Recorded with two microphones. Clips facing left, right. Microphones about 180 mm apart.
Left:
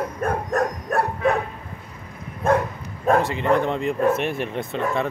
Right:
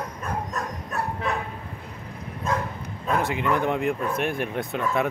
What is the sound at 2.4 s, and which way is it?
Bow-wow, 55° left (ahead or behind).